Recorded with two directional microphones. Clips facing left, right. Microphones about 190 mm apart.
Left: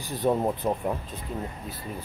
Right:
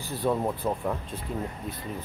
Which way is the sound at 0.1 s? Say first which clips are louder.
Left 2 dB; 20° left (ahead or behind).